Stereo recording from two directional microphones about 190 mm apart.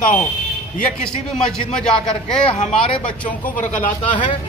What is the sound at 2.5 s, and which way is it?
Speech, 30° left (ahead or behind).